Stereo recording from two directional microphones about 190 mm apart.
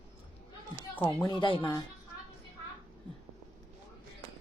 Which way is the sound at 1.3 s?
25° left (ahead or behind).